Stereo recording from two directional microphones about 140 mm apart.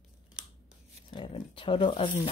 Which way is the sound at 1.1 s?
35° left (ahead or behind).